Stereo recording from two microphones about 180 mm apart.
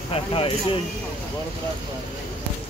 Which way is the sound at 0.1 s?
30° left (ahead or behind).